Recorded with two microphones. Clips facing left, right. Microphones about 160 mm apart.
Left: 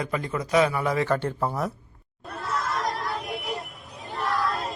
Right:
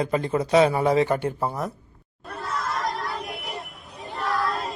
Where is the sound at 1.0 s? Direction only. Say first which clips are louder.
Right 1 dB; 15° right (ahead or behind).